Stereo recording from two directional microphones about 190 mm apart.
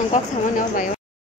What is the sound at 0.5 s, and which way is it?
Speech, 45° left (ahead or behind).